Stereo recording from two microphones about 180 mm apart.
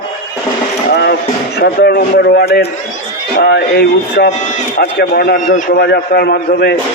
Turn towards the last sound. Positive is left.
turn(degrees=60)  # may be behind; listen again after turning